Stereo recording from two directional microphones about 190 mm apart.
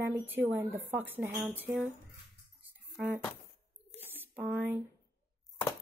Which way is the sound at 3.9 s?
10° right (ahead or behind).